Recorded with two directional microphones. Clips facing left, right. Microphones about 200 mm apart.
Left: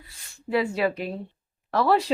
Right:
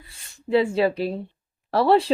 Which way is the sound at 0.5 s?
30° right (ahead or behind).